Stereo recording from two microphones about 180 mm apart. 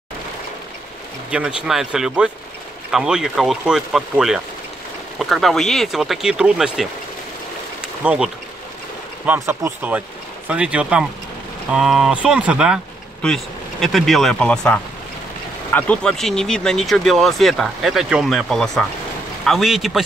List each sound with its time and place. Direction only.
1.3 s speech: 5° right (ahead or behind)
7.8 s insect: 5° right (ahead or behind)
9.2 s speech: 10° right (ahead or behind)